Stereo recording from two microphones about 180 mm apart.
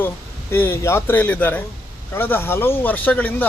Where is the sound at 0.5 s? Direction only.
10° left (ahead or behind).